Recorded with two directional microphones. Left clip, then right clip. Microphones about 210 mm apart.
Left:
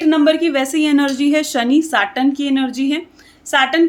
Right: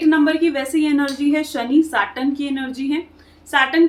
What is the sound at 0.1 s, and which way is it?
A woman's voice, 50° left (ahead or behind).